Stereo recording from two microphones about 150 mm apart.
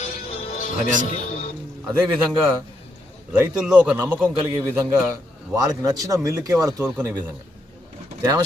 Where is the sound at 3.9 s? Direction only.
10° right (ahead or behind).